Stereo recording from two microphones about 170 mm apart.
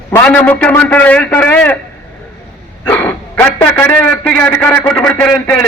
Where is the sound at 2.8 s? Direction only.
10° left (ahead or behind).